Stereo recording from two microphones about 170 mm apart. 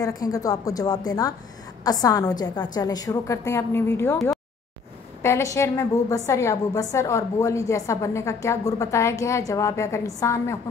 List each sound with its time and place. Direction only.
0.0 s a woman's voice: 20° left (ahead or behind)
5.2 s a woman's voice: 15° left (ahead or behind)